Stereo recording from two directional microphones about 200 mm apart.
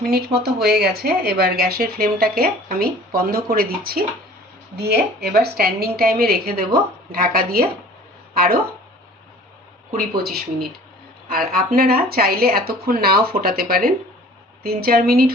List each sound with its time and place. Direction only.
0.0 s a woman's voice: 50° right (ahead or behind)
11.3 s a woman's voice: 45° right (ahead or behind)